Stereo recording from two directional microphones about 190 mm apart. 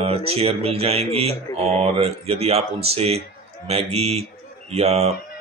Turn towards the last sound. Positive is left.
turn(degrees=-35)  # may be behind; listen again after turning